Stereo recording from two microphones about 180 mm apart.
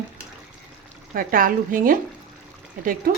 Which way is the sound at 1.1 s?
50° right (ahead or behind).